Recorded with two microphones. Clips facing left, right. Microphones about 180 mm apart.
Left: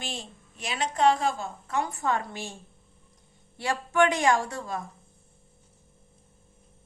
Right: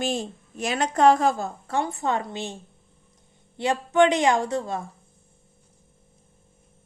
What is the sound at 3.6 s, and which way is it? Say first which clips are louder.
A woman's voice: right 5 dB; 20° right (ahead or behind).